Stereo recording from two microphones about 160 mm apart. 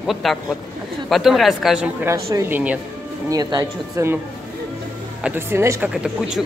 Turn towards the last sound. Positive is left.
turn(degrees=-5)  # may be behind; listen again after turning